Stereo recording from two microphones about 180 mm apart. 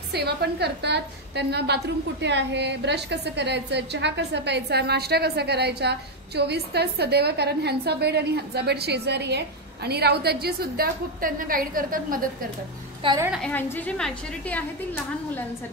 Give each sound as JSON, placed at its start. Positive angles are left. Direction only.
{"t": 0.1, "sound": "a woman's voice", "side_deg": -65}
{"t": 13.0, "sound": "a woman's voice", "side_deg": -30}
{"t": 13.4, "sound": "a woman's voice", "side_deg": 10}